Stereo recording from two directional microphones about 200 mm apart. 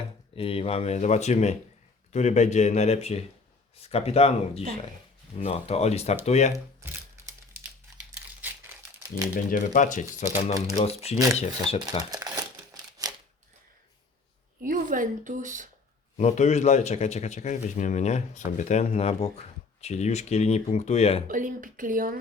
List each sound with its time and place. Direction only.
0.3 s speech: 30° left (ahead or behind)
6.8 s a sound: 15° right (ahead or behind)
8.4 s crumpling: 10° right (ahead or behind)
9.3 s speech: 40° left (ahead or behind)
12.1 s crumpling: 20° right (ahead or behind)
14.6 s speech: 40° right (ahead or behind)
16.1 s speech: 35° left (ahead or behind)
21.2 s speech: 40° right (ahead or behind)